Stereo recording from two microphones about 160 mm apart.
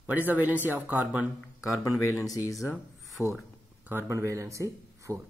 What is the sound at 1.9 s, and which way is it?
Speech, 20° left (ahead or behind).